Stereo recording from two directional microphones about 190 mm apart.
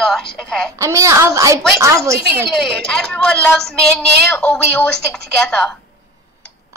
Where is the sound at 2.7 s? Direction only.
5° left (ahead or behind).